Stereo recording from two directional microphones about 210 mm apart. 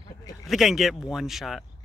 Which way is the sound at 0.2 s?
15° left (ahead or behind).